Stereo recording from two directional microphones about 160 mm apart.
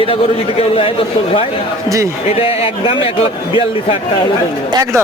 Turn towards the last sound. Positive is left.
turn(degrees=35)  # may be behind; listen again after turning